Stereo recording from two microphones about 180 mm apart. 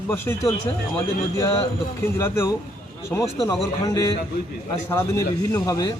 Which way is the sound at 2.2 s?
15° left (ahead or behind).